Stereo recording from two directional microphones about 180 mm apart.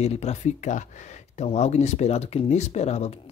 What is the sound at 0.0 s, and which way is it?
Speech, 35° left (ahead or behind).